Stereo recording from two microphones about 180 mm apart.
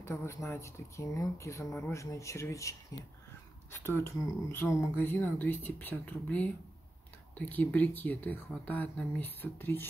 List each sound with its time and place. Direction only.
0.0 s speech: 15° left (ahead or behind)
3.7 s speech: 15° left (ahead or behind)